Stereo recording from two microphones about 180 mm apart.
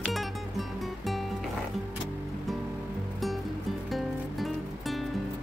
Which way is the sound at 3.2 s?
Centre (ahead or behind).